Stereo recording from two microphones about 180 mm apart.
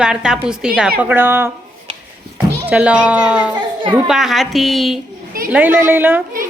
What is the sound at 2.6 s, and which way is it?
A woman's voice, 5° right (ahead or behind).